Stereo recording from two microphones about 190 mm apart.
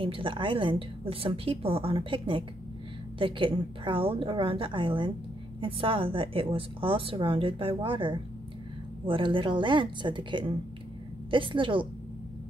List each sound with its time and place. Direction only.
0.0 s a woman's voice: 25° right (ahead or behind)